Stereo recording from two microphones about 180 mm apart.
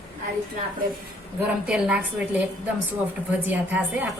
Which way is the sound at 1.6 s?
5° right (ahead or behind).